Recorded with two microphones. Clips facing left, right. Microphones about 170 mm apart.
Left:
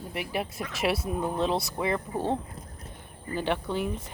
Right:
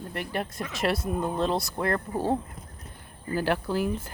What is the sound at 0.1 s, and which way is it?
Speech, 5° left (ahead or behind).